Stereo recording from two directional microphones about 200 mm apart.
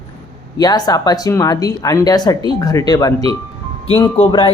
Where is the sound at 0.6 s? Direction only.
20° left (ahead or behind).